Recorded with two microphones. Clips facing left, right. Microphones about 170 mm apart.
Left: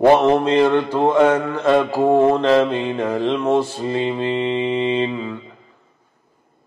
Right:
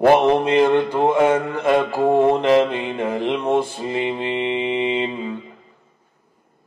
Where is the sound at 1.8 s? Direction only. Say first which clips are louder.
Left 2 dB; 10° left (ahead or behind).